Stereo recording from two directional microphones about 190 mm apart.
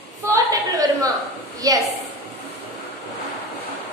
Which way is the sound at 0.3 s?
20° right (ahead or behind).